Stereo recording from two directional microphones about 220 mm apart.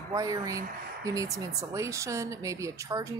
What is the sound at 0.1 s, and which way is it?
Speech, 15° right (ahead or behind).